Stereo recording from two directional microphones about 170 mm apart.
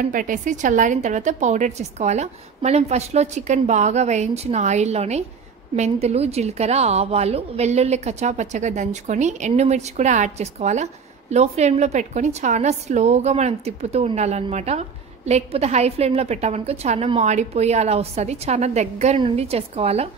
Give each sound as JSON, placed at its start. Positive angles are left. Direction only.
{"t": 0.0, "sound": "a woman's voice", "side_deg": -50}